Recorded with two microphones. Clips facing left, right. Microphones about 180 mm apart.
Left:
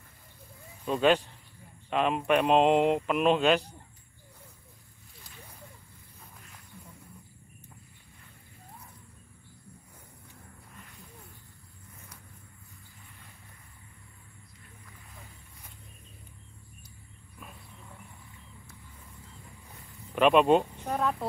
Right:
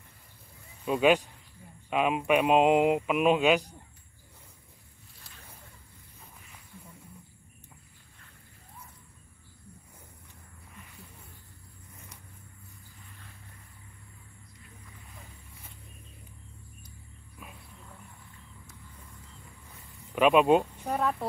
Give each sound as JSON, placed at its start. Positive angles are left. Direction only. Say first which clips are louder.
{"t": 0.8, "sound": "speech", "louder": "right 1 dB", "side_deg": -5}
{"t": 1.9, "sound": "mantra", "louder": "even", "side_deg": -5}
{"t": 17.4, "sound": "a sound", "louder": "even", "side_deg": -5}
{"t": 20.2, "sound": "speech", "louder": "even", "side_deg": -5}